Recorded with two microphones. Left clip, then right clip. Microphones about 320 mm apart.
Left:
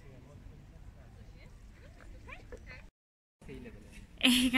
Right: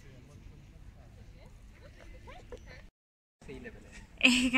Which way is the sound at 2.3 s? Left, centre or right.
Right.